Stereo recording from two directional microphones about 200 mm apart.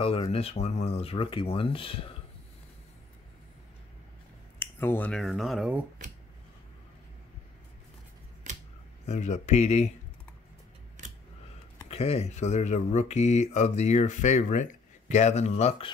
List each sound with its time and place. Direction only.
0.0 s speech: 30° left (ahead or behind)
4.6 s speech: 10° left (ahead or behind)
8.5 s a sound: 35° right (ahead or behind)
9.0 s speech: 35° left (ahead or behind)
11.0 s scissors: 40° right (ahead or behind)
11.9 s speech: 30° left (ahead or behind)